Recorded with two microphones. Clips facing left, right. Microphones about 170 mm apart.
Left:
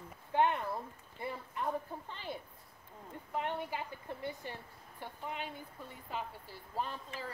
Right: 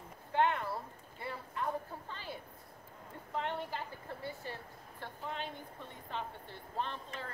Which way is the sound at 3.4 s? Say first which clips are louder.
Left 1 dB; 15° left (ahead or behind).